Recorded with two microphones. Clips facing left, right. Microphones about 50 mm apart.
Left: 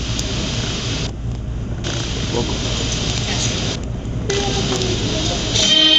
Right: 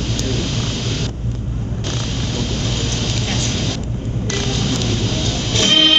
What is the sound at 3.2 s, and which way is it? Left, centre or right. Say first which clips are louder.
Vehicle: right 1 dB; centre.